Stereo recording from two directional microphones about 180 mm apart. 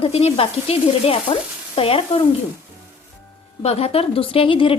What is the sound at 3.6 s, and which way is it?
Speech, 35° left (ahead or behind).